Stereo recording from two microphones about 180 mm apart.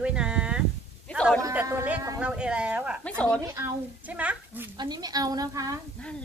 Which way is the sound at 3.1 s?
5° left (ahead or behind).